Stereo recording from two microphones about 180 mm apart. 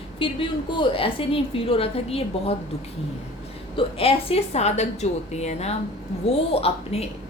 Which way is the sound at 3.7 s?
30° left (ahead or behind).